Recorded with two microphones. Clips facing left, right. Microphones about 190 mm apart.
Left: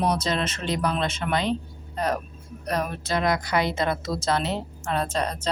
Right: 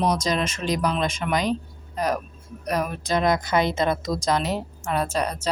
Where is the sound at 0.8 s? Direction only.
15° right (ahead or behind).